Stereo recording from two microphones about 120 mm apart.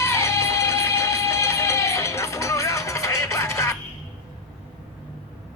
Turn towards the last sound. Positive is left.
turn(degrees=25)  # may be behind; listen again after turning